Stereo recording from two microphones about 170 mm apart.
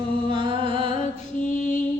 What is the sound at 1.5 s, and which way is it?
Mantra, 50° left (ahead or behind).